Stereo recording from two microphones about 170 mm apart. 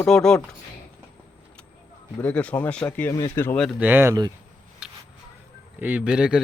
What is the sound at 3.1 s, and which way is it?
Speech, 20° left (ahead or behind).